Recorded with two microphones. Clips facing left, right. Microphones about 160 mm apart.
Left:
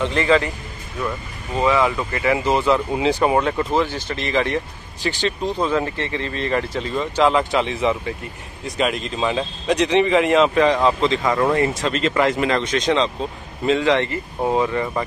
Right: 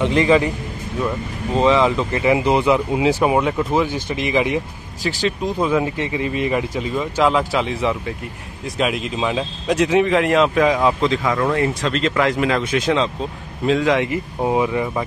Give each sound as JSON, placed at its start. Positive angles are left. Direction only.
{"t": 0.0, "sound": "speech", "side_deg": -15}
{"t": 1.5, "sound": "speech", "side_deg": -25}
{"t": 5.0, "sound": "speech", "side_deg": 0}